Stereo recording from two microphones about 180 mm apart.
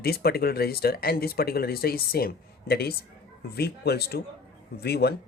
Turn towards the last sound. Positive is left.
turn(degrees=60)  # may be behind; listen again after turning